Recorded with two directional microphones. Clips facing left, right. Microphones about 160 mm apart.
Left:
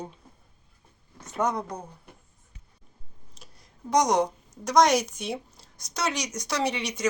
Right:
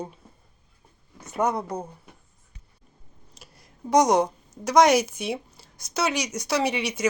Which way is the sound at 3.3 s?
5° right (ahead or behind).